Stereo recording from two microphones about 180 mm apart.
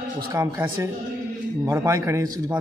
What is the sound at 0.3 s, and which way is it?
A man's voice, 15° right (ahead or behind).